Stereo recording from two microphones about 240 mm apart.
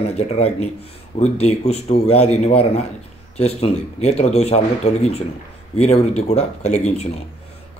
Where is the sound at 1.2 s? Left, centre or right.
Left.